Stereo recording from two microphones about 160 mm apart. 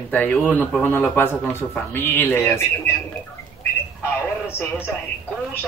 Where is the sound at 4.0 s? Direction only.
15° left (ahead or behind).